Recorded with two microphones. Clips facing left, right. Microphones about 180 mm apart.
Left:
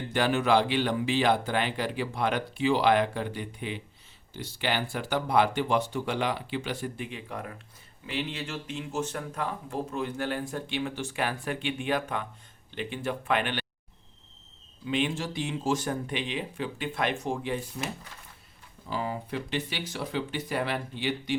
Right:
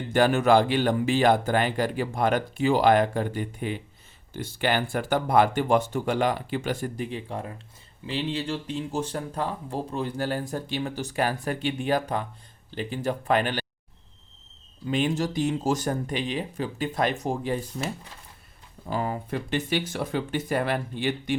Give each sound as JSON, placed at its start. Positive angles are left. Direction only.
{"t": 0.1, "sound": "speech", "side_deg": -45}
{"t": 14.8, "sound": "speech", "side_deg": -40}
{"t": 18.9, "sound": "speech", "side_deg": -50}